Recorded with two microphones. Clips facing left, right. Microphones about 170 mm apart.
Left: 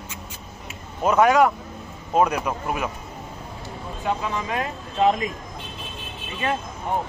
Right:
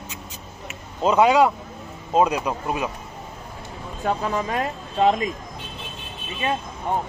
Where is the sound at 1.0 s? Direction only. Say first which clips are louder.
Right 1 dB; 15° right (ahead or behind).